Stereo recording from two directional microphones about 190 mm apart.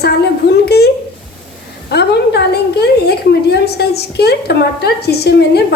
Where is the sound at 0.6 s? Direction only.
60° left (ahead or behind).